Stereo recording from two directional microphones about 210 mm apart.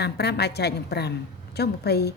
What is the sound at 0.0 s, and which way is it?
A woman's voice, 50° left (ahead or behind).